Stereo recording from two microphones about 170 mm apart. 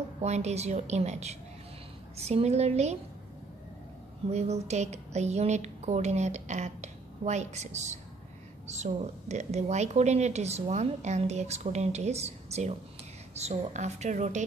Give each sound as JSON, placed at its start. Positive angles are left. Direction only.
{"t": 0.2, "sound": "a woman's voice", "side_deg": -40}
{"t": 4.3, "sound": "a woman's voice", "side_deg": -40}